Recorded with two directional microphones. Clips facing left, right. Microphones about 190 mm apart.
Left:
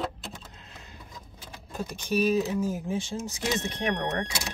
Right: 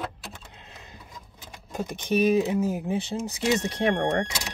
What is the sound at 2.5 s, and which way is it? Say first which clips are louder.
Speech: right 3 dB; 60° right (ahead or behind).